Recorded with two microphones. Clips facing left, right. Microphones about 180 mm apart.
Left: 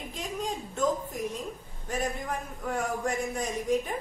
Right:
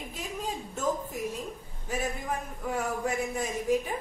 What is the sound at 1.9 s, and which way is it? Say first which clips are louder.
A man's voice: even; 5° right (ahead or behind).